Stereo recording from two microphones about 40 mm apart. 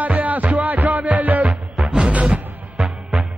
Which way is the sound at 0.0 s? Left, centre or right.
Right.